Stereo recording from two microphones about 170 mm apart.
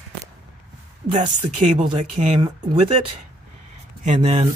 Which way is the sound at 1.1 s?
45° right (ahead or behind).